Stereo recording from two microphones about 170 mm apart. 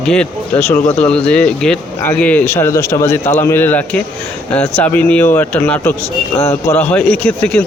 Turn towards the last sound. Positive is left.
turn(degrees=10)  # may be behind; listen again after turning